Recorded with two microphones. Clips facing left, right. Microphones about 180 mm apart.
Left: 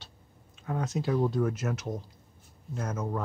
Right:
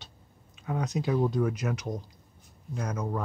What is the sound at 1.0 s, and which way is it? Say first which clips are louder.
Speech: even; centre (ahead or behind).